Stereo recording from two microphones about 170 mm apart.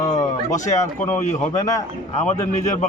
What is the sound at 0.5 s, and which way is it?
A man's voice, 45° left (ahead or behind).